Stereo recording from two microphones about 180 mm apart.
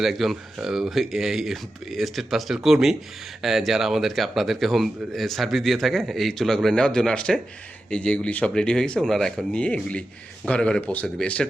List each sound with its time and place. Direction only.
0.0 s speech: centre (ahead or behind)